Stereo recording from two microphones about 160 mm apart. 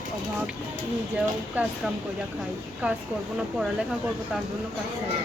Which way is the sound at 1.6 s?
10° right (ahead or behind).